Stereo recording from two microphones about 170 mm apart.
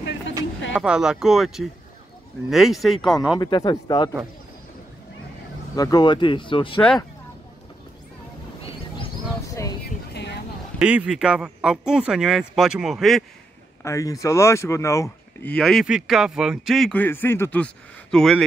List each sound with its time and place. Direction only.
0.7 s a man's voice: 5° right (ahead or behind)
3.3 s speech: 25° left (ahead or behind)
5.8 s speech: 25° left (ahead or behind)
9.5 s a sound: 20° left (ahead or behind)
10.1 s a sound: 80° left
10.8 s a man's voice: 5° right (ahead or behind)
13.8 s speech: 20° left (ahead or behind)
15.5 s a man's voice: centre (ahead or behind)